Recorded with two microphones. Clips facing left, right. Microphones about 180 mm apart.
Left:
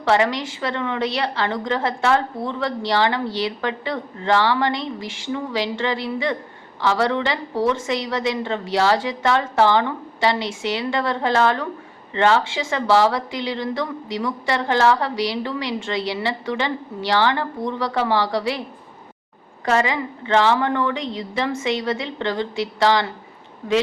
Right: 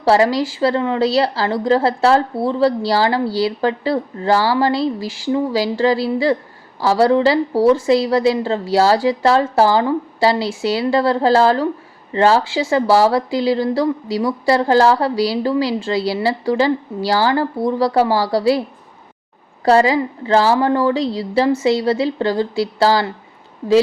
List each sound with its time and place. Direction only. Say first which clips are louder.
0.0 s a woman's voice: right 5 dB; 35° right (ahead or behind)
19.6 s a woman's voice: right 7 dB; 35° right (ahead or behind)